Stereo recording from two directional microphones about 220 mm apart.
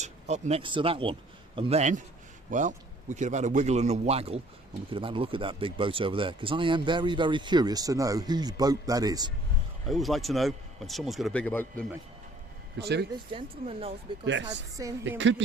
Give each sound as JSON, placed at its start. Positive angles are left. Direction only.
{"t": 0.0, "sound": "speech", "side_deg": -30}
{"t": 9.8, "sound": "speech", "side_deg": 0}
{"t": 12.8, "sound": "speech", "side_deg": -50}
{"t": 13.1, "sound": "speech", "side_deg": -25}
{"t": 14.8, "sound": "speech", "side_deg": -15}